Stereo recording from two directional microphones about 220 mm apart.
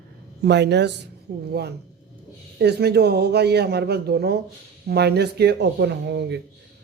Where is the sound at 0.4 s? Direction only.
50° right (ahead or behind).